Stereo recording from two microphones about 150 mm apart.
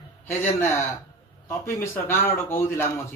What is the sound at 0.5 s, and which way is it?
A man's voice, 20° left (ahead or behind).